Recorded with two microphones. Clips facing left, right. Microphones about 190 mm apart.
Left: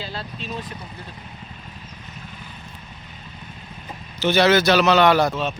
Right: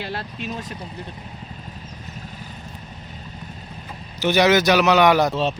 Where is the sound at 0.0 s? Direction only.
55° right (ahead or behind).